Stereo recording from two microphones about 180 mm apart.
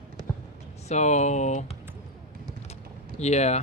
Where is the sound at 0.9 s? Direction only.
40° left (ahead or behind).